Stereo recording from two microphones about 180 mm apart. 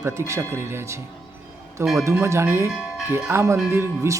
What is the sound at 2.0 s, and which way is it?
A man's voice, 15° right (ahead or behind).